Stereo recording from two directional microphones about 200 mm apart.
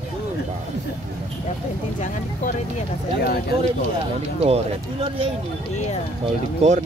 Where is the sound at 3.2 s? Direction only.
50° left (ahead or behind).